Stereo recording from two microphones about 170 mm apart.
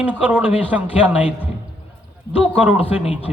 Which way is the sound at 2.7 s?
35° left (ahead or behind).